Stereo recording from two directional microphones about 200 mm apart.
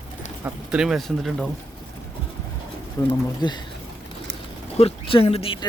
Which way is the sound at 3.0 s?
15° left (ahead or behind).